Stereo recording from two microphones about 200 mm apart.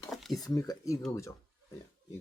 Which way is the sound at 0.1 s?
Centre (ahead or behind).